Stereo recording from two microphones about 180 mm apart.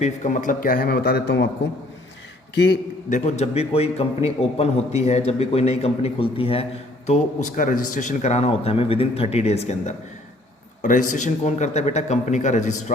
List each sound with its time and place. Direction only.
0.0 s speech: 40° left (ahead or behind); by 1.5 s 65° left (ahead or behind)
3.1 s a man's voice: 35° left (ahead or behind)
7.1 s a man's voice: 45° left (ahead or behind)